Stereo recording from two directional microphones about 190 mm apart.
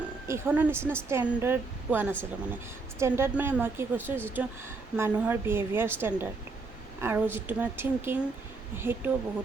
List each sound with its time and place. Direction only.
0.3 s a woman's voice: 15° right (ahead or behind)